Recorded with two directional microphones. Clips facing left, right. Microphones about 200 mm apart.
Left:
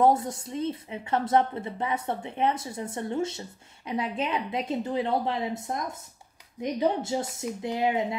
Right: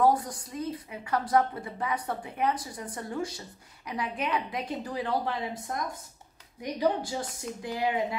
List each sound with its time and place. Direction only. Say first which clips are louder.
0.0 s a woman's voice: left 2 dB; 25° left (ahead or behind)